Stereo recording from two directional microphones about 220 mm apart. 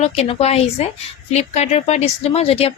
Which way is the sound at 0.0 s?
30° left (ahead or behind).